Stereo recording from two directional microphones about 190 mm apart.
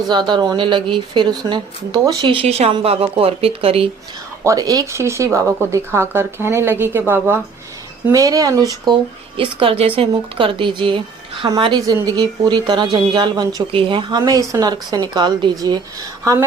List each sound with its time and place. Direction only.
0.1 s speech: 25° right (ahead or behind)
4.4 s speech: 20° right (ahead or behind)